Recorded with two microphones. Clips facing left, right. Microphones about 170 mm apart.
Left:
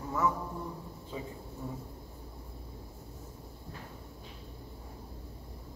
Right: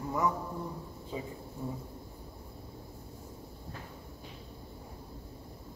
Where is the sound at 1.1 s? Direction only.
15° right (ahead or behind).